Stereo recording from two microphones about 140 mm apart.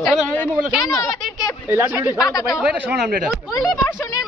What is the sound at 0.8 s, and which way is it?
Speech, 25° left (ahead or behind).